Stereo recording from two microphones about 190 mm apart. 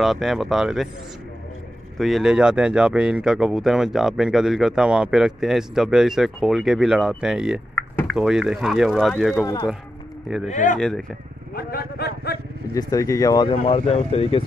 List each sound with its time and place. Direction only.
0.0 s speech: centre (ahead or behind)
2.0 s speech: centre (ahead or behind)
7.7 s a sound: 10° left (ahead or behind)
8.2 s speech: 5° right (ahead or behind)
10.5 s speech: 40° left (ahead or behind)
10.8 s speech: 5° left (ahead or behind)
11.5 s a man's voice: 50° left (ahead or behind)
12.7 s speech: 20° left (ahead or behind)